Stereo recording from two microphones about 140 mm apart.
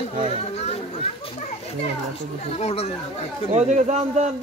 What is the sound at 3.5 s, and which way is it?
Speech, 55° right (ahead or behind).